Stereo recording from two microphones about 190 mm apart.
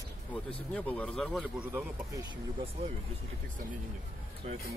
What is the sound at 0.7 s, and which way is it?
Speech, 10° left (ahead or behind).